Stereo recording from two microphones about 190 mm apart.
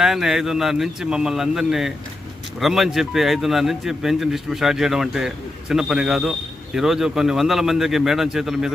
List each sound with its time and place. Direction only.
0.0 s speech: centre (ahead or behind)